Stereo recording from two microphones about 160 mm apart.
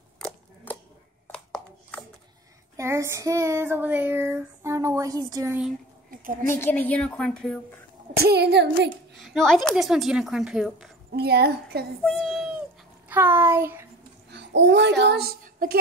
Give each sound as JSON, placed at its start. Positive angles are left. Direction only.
{"t": 0.7, "sound": "a sound", "side_deg": 10}
{"t": 2.8, "sound": "child singing", "side_deg": -15}
{"t": 6.0, "sound": "a sound", "side_deg": -60}
{"t": 6.5, "sound": "a woman's voice", "side_deg": 10}
{"t": 8.2, "sound": "a child's voice", "side_deg": -85}
{"t": 9.1, "sound": "speech", "side_deg": 0}
{"t": 11.1, "sound": "speech", "side_deg": -80}
{"t": 12.0, "sound": "a sound", "side_deg": 5}
{"t": 13.1, "sound": "child singing", "side_deg": -15}
{"t": 14.3, "sound": "speech", "side_deg": -90}